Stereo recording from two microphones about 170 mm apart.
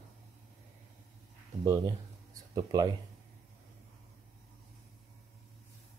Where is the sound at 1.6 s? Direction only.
25° right (ahead or behind).